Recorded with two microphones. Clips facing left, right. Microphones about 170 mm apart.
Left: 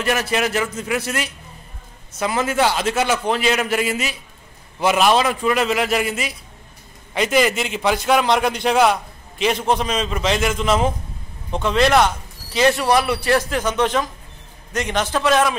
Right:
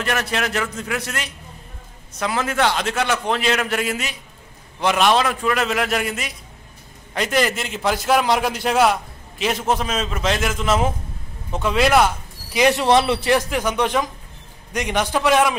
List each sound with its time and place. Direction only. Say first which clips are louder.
0.0 s a man's voice: left 3 dB; 5° left (ahead or behind)
12.5 s speech: right 1 dB; 15° right (ahead or behind)